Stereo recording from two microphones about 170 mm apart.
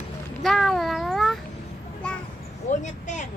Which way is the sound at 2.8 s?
45° left (ahead or behind).